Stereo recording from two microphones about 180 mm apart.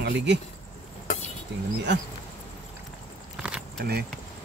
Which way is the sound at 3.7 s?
60° right (ahead or behind).